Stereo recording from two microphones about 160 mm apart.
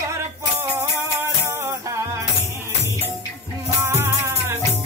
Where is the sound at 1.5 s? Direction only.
20° right (ahead or behind).